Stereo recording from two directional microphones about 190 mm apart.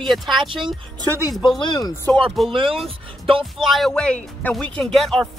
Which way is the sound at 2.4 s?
30° right (ahead or behind).